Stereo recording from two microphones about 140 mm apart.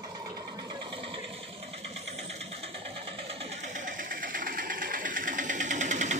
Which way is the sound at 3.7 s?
70° right (ahead or behind).